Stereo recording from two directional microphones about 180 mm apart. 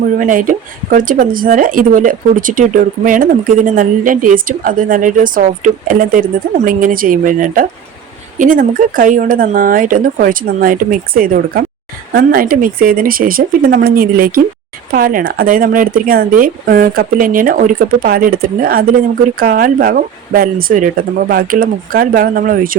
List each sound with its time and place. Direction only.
0.2 s speech: 45° right (ahead or behind)